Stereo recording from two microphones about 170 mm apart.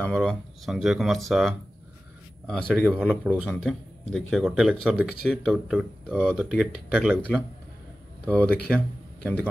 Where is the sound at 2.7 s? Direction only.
5° right (ahead or behind).